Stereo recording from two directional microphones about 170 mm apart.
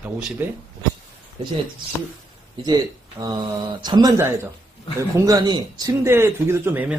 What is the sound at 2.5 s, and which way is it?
Speech, 25° right (ahead or behind).